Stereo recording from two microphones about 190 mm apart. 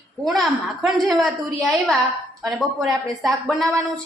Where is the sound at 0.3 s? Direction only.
Centre (ahead or behind).